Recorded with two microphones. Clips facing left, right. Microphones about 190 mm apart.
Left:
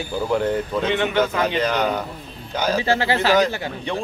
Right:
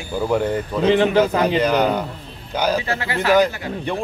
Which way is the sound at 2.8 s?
30° left (ahead or behind).